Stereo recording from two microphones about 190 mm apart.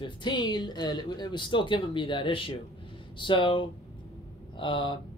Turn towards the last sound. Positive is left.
turn(degrees=25)  # may be behind; listen again after turning